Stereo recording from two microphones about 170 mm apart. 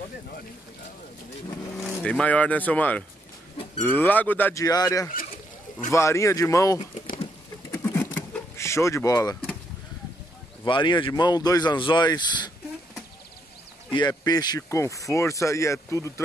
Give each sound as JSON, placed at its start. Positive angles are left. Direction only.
{"t": 1.9, "sound": "speech", "side_deg": 10}
{"t": 4.6, "sound": "speech", "side_deg": 20}
{"t": 5.1, "sound": "a sound", "side_deg": 55}
{"t": 5.9, "sound": "speech", "side_deg": 15}
{"t": 7.7, "sound": "vehicle", "side_deg": 15}
{"t": 10.6, "sound": "speech", "side_deg": 25}
{"t": 13.9, "sound": "speech", "side_deg": 25}